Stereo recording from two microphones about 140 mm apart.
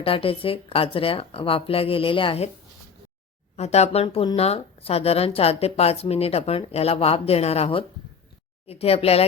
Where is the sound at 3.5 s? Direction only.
50° left (ahead or behind).